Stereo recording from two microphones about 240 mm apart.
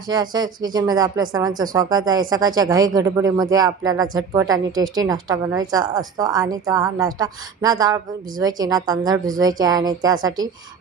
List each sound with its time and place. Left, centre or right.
0.1 s a woman's voice: centre